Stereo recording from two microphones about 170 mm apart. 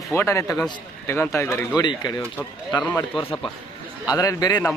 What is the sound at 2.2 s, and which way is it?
Speech, 10° left (ahead or behind).